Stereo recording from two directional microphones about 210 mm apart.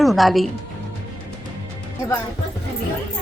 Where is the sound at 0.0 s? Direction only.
Centre (ahead or behind).